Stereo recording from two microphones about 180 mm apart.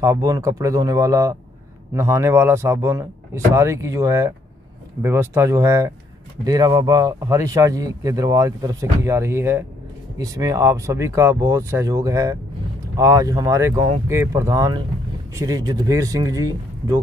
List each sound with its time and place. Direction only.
0.0 s speech: 20° right (ahead or behind)